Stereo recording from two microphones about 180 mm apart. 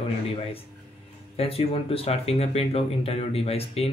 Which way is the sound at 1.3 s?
30° left (ahead or behind).